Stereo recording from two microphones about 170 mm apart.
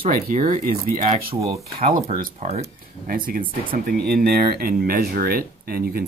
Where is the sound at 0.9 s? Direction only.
40° right (ahead or behind).